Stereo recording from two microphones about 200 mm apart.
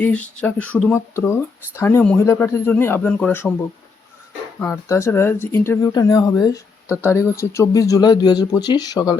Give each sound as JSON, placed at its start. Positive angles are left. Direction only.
{"t": 0.0, "sound": "speech", "side_deg": 5}
{"t": 4.6, "sound": "speech", "side_deg": 15}